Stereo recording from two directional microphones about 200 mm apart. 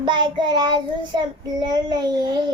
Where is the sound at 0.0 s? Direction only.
25° right (ahead or behind).